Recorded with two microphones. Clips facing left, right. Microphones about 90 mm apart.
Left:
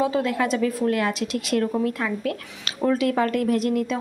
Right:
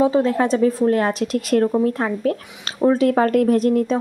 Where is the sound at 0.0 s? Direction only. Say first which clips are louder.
Right 5 dB; 30° right (ahead or behind).